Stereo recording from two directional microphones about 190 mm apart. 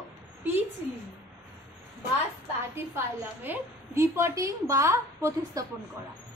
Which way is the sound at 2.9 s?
10° right (ahead or behind).